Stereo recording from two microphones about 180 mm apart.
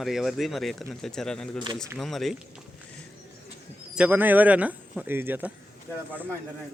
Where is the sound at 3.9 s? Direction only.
10° right (ahead or behind).